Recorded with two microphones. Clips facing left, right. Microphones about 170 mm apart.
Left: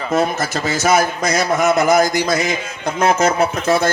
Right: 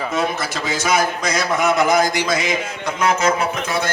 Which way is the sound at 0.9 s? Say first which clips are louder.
Left 3 dB; 45° left (ahead or behind).